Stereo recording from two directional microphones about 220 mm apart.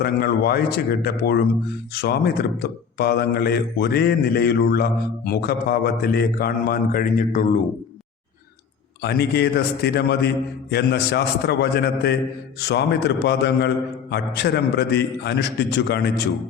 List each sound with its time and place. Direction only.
0.0 s speech: 45° left (ahead or behind)
9.0 s speech: 50° left (ahead or behind)